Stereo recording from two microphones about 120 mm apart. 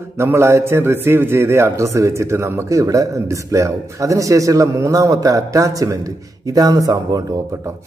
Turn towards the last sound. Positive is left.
turn(degrees=-30)  # may be behind; listen again after turning